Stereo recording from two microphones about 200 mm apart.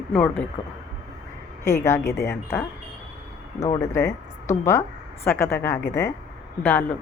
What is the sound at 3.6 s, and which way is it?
A woman's voice, 25° left (ahead or behind).